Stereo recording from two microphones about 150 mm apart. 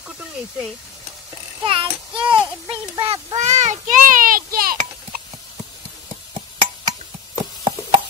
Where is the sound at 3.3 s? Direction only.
50° right (ahead or behind).